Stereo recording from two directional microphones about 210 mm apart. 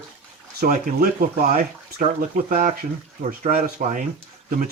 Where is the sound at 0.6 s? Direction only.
40° right (ahead or behind).